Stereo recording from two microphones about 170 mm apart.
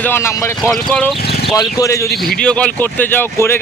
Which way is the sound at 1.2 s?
75° left (ahead or behind).